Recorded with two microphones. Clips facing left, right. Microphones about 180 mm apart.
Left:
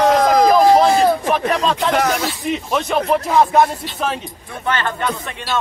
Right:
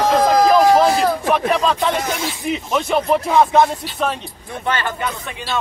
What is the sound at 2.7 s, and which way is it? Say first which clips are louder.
Speech: right 1 dB; centre (ahead or behind).